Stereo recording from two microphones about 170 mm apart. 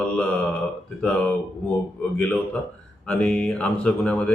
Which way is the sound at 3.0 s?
5° left (ahead or behind).